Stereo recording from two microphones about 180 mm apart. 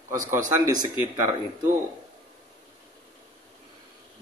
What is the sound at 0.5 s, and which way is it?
Speech, 20° right (ahead or behind).